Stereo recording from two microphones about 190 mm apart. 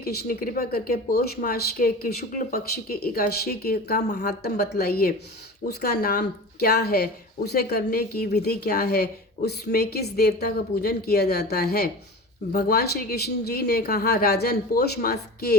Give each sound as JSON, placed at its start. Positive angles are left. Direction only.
{"t": 0.0, "sound": "speech", "side_deg": 55}